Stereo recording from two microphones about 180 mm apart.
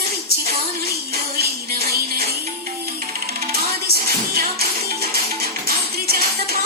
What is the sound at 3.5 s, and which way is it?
Music, 60° right (ahead or behind).